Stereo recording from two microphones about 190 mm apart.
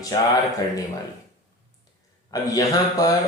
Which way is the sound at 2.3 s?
20° left (ahead or behind).